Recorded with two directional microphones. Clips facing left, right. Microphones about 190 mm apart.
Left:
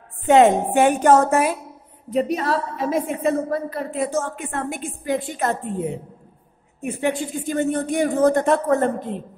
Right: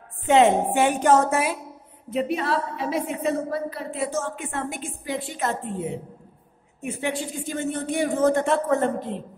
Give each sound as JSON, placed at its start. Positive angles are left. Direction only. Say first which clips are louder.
{"t": 0.3, "sound": "speech", "louder": "left 3 dB", "side_deg": 45}
{"t": 6.8, "sound": "speech", "louder": "left 5 dB", "side_deg": 50}